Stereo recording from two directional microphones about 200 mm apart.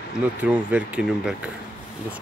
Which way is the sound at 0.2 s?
5° right (ahead or behind).